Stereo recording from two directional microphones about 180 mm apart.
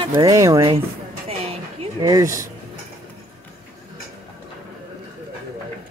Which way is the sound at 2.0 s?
20° right (ahead or behind).